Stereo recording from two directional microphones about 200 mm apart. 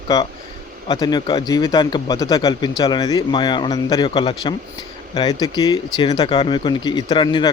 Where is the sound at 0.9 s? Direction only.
20° left (ahead or behind).